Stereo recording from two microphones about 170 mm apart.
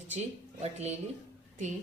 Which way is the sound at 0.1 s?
40° right (ahead or behind).